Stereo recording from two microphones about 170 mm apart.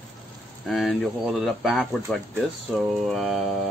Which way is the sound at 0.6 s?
Centre (ahead or behind).